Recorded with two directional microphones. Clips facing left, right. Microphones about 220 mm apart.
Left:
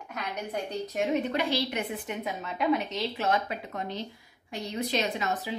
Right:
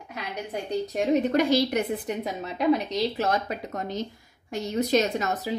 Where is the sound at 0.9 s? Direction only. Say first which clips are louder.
Right 5 dB; 35° right (ahead or behind).